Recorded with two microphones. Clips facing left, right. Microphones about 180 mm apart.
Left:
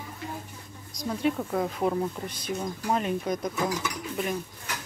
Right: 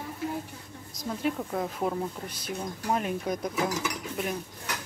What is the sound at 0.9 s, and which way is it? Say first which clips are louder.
Speech: left 3 dB; 5° right (ahead or behind).